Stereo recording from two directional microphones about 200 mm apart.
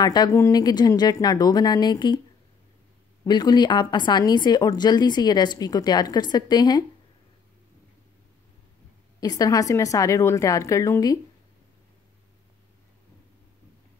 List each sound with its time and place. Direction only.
0.0 s a woman's voice: 20° left (ahead or behind)
3.3 s a woman's voice: 20° left (ahead or behind)
9.2 s a woman's voice: 20° left (ahead or behind)